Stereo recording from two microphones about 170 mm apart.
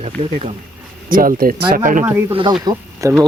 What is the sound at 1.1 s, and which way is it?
Speech, 55° right (ahead or behind).